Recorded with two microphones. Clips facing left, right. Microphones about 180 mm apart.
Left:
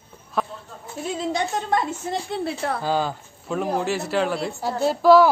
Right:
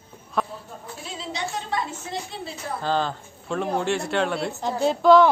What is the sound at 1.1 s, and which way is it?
A woman's voice, 50° left (ahead or behind).